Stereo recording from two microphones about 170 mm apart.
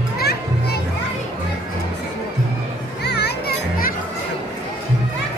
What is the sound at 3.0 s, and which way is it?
Children playing, 75° left (ahead or behind).